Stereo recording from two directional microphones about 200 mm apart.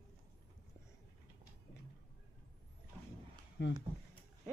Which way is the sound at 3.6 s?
60° left (ahead or behind).